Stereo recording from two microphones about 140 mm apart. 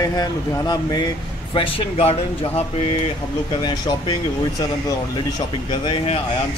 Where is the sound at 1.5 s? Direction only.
45° left (ahead or behind).